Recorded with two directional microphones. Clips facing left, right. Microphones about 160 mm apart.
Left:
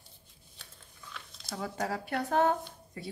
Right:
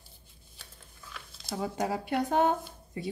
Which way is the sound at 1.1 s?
5° right (ahead or behind).